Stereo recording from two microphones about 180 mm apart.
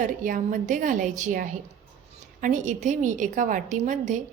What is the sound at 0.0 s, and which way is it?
A woman's voice, 45° right (ahead or behind).